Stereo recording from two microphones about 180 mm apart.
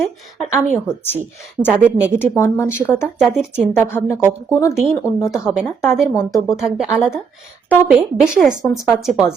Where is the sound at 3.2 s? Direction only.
Centre (ahead or behind).